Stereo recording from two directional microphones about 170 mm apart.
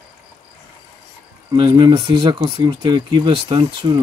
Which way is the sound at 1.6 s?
25° right (ahead or behind).